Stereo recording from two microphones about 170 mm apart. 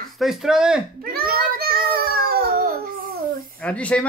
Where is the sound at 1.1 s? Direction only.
60° right (ahead or behind).